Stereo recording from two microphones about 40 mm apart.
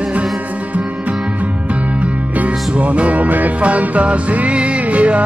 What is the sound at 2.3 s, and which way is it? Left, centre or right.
Music, right.